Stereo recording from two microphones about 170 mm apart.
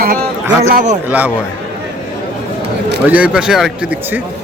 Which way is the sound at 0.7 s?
45° right (ahead or behind).